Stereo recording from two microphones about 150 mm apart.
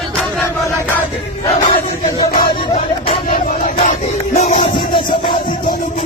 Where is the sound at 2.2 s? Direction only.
40° left (ahead or behind).